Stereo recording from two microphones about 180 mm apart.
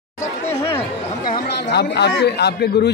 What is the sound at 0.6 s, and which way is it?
Chatter, 15° left (ahead or behind).